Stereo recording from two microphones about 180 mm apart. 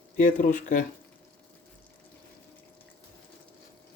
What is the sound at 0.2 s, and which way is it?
Speech, 50° left (ahead or behind).